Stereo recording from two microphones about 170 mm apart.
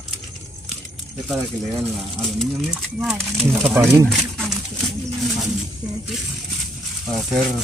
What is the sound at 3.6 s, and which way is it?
Speech, 15° right (ahead or behind).